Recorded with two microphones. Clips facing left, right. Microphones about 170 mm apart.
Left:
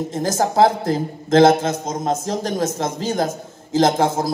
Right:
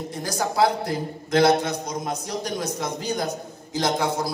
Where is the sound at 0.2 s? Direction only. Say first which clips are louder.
Left 6 dB; 45° left (ahead or behind).